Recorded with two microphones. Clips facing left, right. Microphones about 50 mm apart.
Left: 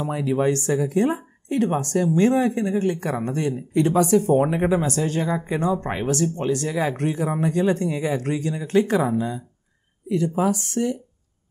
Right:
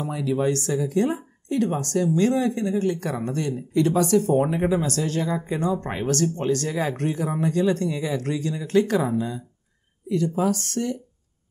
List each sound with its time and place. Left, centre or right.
0.0 s speech: left